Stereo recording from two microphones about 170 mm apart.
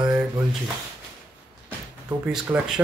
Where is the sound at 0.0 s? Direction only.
20° right (ahead or behind).